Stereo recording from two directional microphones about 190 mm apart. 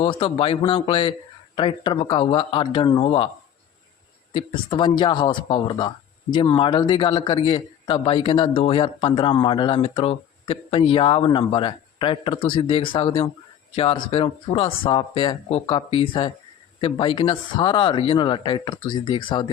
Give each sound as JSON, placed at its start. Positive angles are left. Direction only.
{"t": 0.0, "sound": "a man's voice", "side_deg": 25}
{"t": 4.4, "sound": "a man's voice", "side_deg": 25}